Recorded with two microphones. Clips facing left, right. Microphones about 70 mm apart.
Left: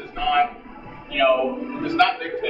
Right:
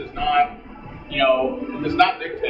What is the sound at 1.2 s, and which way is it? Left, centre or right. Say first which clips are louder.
Speech: right 1 dB; centre.